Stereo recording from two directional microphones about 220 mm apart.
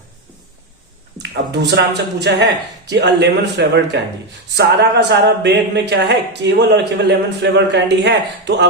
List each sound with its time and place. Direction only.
1.6 s speech: 50° right (ahead or behind)